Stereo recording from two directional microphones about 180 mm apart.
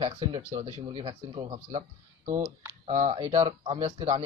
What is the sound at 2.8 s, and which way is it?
A man's voice, 40° right (ahead or behind).